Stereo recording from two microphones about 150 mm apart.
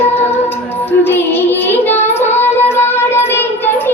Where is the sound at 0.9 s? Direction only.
15° left (ahead or behind).